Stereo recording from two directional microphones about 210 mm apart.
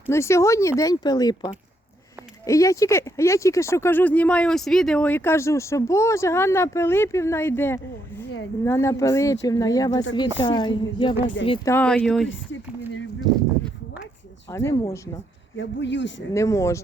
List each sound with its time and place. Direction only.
0.1 s speech: 15° left (ahead or behind)
2.5 s a woman's voice: 15° left (ahead or behind)
11.7 s speech: 5° left (ahead or behind)
14.5 s speech: 15° left (ahead or behind)
15.5 s speech: 60° left (ahead or behind)
16.3 s speech: 15° left (ahead or behind)